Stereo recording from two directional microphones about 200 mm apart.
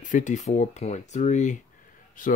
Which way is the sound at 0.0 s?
40° left (ahead or behind).